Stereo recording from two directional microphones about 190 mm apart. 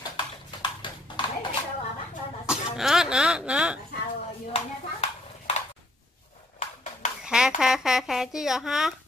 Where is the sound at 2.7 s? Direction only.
5° right (ahead or behind).